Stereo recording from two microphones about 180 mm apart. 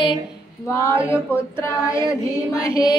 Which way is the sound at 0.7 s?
15° left (ahead or behind).